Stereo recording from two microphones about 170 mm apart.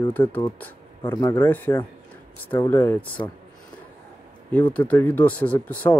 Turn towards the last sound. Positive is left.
turn(degrees=10)  # may be behind; listen again after turning